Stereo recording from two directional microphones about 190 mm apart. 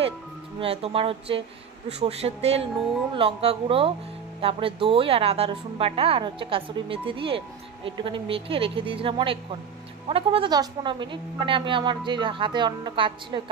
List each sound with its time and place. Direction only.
0.6 s a woman's voice: 30° right (ahead or behind)